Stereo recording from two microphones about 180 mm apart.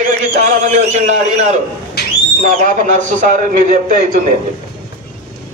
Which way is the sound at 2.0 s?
60° left (ahead or behind).